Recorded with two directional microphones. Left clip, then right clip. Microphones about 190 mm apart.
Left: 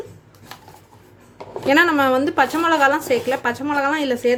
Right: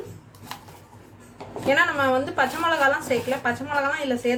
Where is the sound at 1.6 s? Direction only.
55° left (ahead or behind).